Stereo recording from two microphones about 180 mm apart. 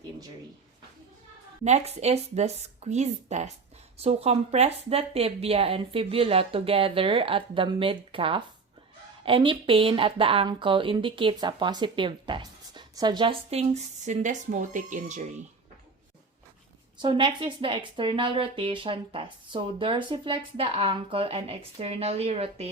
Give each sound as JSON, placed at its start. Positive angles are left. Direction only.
{"t": 1.6, "sound": "a woman's voice", "side_deg": -35}
{"t": 17.0, "sound": "speech", "side_deg": -25}